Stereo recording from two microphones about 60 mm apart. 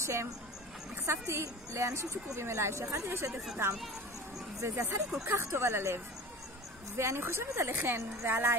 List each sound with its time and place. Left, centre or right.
0.0 s a woman's voice: right
7.0 s a woman's voice: right